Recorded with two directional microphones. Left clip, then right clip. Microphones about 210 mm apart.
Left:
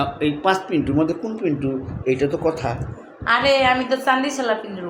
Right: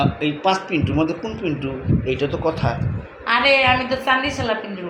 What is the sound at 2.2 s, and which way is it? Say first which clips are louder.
A man's voice: even; 25° left (ahead or behind).